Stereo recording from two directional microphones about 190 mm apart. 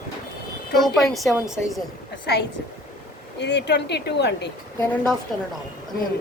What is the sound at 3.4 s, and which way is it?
Speech, 65° left (ahead or behind).